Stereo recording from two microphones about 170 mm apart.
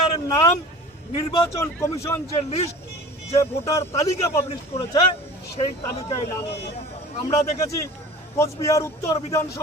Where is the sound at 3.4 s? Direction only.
15° left (ahead or behind).